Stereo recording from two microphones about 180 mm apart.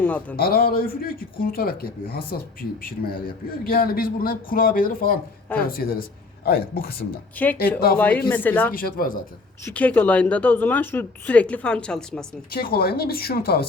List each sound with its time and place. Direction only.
0.0 s speech: 10° left (ahead or behind)
0.3 s speech: 55° left (ahead or behind)
7.4 s speech: 10° left (ahead or behind)
8.7 s speech: 55° left (ahead or behind)
9.6 s speech: 10° left (ahead or behind)
12.5 s speech: 55° left (ahead or behind)